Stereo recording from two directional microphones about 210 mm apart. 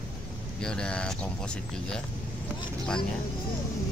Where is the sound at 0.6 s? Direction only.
5° left (ahead or behind).